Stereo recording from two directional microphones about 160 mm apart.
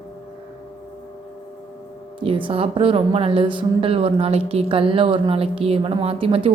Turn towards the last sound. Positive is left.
turn(degrees=-35)  # may be behind; listen again after turning